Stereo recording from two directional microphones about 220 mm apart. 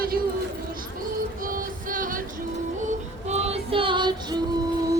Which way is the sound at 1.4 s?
40° right (ahead or behind).